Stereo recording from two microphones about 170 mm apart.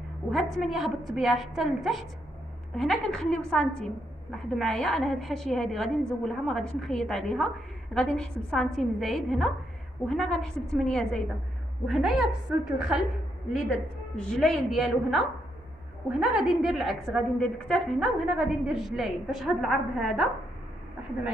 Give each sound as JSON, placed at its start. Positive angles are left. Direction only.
{"t": 0.3, "sound": "a woman's voice", "side_deg": 0}